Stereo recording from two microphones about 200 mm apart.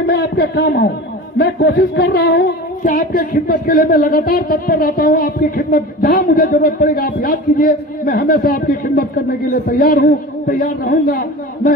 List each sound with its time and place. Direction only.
0.0 s a man's voice: 55° left (ahead or behind)